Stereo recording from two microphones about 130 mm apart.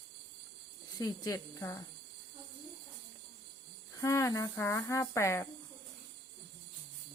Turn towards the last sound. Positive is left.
turn(degrees=20)  # may be behind; listen again after turning